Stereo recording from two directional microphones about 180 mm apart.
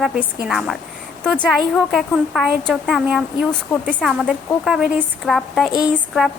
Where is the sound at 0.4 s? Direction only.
Centre (ahead or behind).